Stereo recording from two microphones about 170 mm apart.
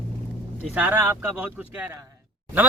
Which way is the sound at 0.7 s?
10° right (ahead or behind).